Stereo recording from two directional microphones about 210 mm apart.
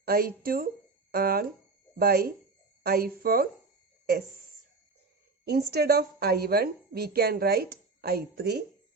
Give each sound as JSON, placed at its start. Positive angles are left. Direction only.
{"t": 0.0, "sound": "a woman's voice", "side_deg": -45}
{"t": 5.5, "sound": "a woman's voice", "side_deg": -50}